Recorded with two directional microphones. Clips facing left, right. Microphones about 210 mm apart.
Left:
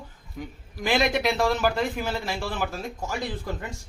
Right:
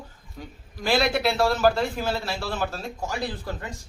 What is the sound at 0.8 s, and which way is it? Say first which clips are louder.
Speech: right 1 dB; 15° left (ahead or behind).